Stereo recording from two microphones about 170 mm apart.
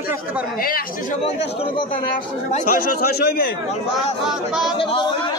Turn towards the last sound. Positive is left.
turn(degrees=60)  # may be behind; listen again after turning